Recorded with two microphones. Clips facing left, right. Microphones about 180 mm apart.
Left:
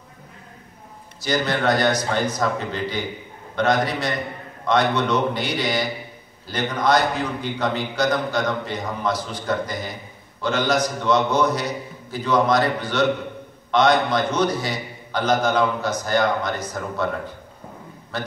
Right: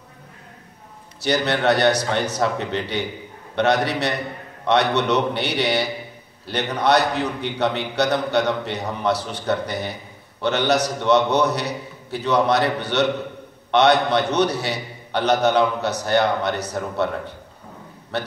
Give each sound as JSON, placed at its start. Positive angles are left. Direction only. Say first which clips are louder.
{"t": 1.2, "sound": "a man's voice", "louder": "right 2 dB", "side_deg": -65}